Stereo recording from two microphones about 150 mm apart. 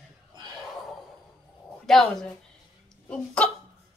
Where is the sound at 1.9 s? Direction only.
Centre (ahead or behind).